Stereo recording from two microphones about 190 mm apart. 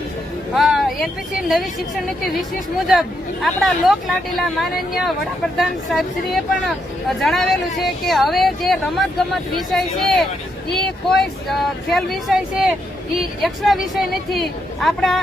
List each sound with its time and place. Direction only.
0.5 s a sound: centre (ahead or behind)
2.0 s speech: centre (ahead or behind)
3.4 s speech: centre (ahead or behind)